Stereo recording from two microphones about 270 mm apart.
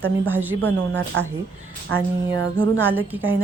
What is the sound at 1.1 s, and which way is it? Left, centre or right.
Speech, right.